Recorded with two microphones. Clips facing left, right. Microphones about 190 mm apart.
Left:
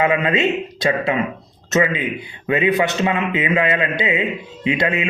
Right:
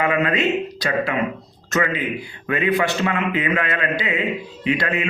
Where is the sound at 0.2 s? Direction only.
25° left (ahead or behind).